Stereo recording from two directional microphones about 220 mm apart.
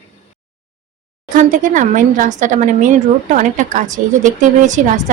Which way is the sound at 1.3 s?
35° right (ahead or behind).